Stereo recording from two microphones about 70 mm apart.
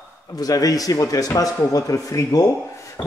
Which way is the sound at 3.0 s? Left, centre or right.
Centre.